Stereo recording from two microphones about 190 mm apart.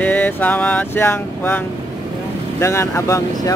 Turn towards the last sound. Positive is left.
turn(degrees=15)  # may be behind; listen again after turning